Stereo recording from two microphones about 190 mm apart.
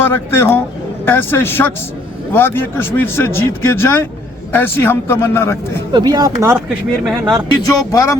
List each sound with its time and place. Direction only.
0.0 s speech: 10° left (ahead or behind)
5.9 s speech: 20° right (ahead or behind)
7.0 s speech: centre (ahead or behind)
7.9 s speech: 15° left (ahead or behind)